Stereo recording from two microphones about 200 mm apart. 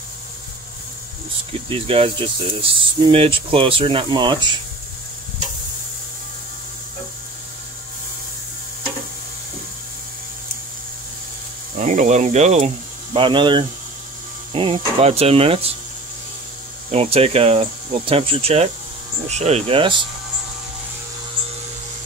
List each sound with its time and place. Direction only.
1.7 s speech: 25° right (ahead or behind)
11.8 s speech: 35° right (ahead or behind)
16.9 s speech: 30° right (ahead or behind)